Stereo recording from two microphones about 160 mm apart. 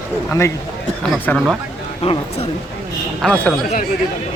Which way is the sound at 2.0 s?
40° left (ahead or behind).